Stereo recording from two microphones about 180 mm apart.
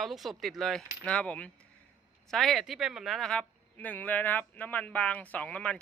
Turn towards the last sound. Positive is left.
turn(degrees=5)  # may be behind; listen again after turning